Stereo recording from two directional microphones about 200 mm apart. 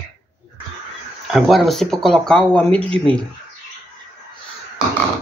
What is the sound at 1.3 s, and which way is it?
Speech, centre (ahead or behind).